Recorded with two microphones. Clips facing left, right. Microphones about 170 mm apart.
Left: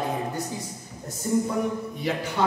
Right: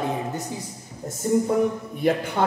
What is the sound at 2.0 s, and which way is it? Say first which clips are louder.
Speech: right 7 dB; 55° right (ahead or behind).